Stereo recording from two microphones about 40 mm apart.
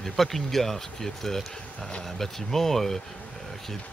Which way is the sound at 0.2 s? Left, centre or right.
Centre.